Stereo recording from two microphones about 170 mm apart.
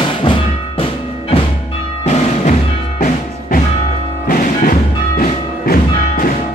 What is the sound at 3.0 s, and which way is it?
Music, 50° left (ahead or behind).